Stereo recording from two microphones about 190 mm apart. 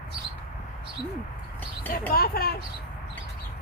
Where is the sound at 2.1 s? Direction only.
50° left (ahead or behind).